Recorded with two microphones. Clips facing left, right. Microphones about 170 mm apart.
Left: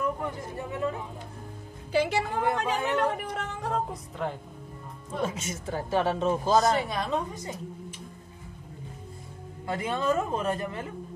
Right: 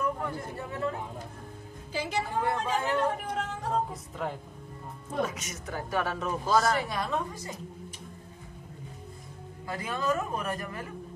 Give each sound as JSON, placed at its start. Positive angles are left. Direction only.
{"t": 0.0, "sound": "speech", "side_deg": 20}
{"t": 1.9, "sound": "a woman's voice", "side_deg": 65}
{"t": 2.4, "sound": "speech", "side_deg": 20}
{"t": 3.0, "sound": "speech", "side_deg": 70}
{"t": 3.9, "sound": "a woman's voice", "side_deg": 0}
{"t": 5.2, "sound": "speech", "side_deg": 30}
{"t": 9.7, "sound": "speech", "side_deg": 25}